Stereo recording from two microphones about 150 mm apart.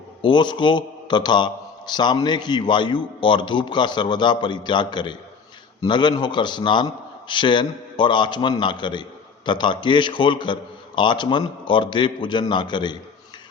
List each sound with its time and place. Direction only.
0.2 s a man's voice: 30° left (ahead or behind)